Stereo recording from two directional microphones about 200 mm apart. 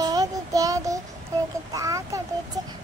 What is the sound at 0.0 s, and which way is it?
Child singing, 15° right (ahead or behind).